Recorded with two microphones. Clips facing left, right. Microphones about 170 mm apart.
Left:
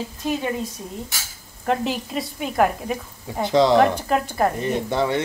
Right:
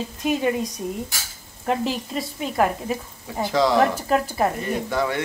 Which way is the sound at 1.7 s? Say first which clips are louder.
Left 1 dB; centre (ahead or behind).